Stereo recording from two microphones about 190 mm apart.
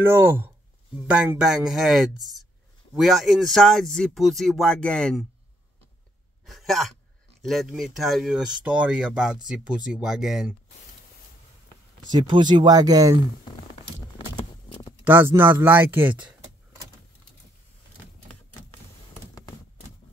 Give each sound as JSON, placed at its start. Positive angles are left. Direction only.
{"t": 0.0, "sound": "speech", "side_deg": -10}
{"t": 6.4, "sound": "sigh", "side_deg": 0}
{"t": 7.4, "sound": "speech", "side_deg": 0}
{"t": 12.1, "sound": "speech", "side_deg": -25}
{"t": 13.8, "sound": "clip-clop", "side_deg": 30}
{"t": 14.7, "sound": "a sound", "side_deg": 25}
{"t": 15.0, "sound": "speech", "side_deg": -10}